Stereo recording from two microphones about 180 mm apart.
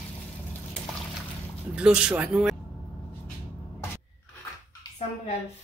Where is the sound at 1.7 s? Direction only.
5° right (ahead or behind).